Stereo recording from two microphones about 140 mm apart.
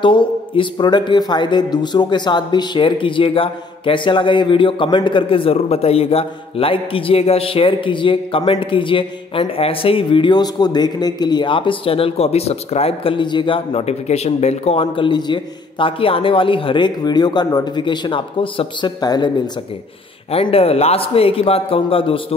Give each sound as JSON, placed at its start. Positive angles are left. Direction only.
{"t": 0.0, "sound": "speech", "side_deg": 35}
{"t": 20.2, "sound": "a man's voice", "side_deg": 45}